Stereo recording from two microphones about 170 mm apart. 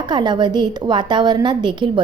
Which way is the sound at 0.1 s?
25° right (ahead or behind).